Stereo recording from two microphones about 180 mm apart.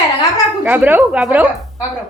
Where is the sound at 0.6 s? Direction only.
10° right (ahead or behind).